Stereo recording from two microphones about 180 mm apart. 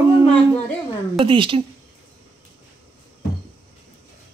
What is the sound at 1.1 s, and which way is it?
Speech, 30° right (ahead or behind).